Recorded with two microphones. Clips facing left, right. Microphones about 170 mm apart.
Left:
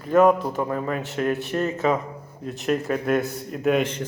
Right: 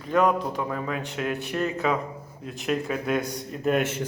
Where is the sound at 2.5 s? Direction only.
Centre (ahead or behind).